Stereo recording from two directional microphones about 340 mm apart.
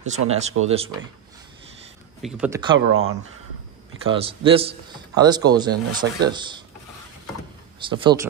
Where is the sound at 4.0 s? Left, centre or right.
Centre.